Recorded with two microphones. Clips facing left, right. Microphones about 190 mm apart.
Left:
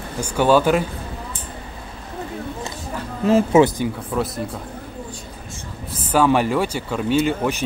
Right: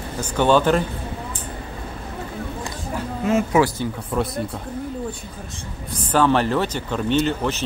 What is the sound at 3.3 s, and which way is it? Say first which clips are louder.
Speech: left 4 dB; 30° left (ahead or behind).